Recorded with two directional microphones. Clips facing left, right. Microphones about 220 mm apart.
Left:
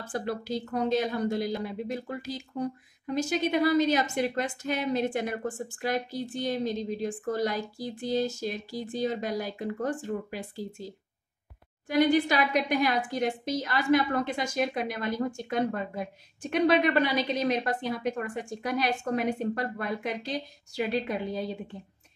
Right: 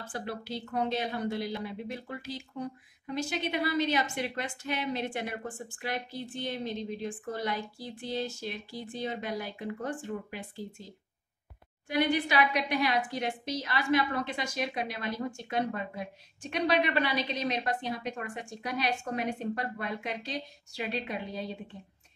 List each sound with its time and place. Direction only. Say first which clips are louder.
0.1 s a woman's voice: left 6 dB; 45° left (ahead or behind)
11.9 s a woman's voice: left 5 dB; 40° left (ahead or behind)